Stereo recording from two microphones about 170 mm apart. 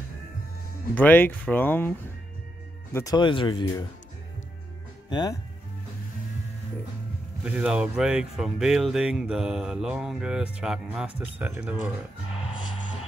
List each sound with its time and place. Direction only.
0.9 s speech: 10° left (ahead or behind); by 3.8 s 25° left (ahead or behind)
5.1 s speech: 25° left (ahead or behind)
7.4 s speech: 5° right (ahead or behind)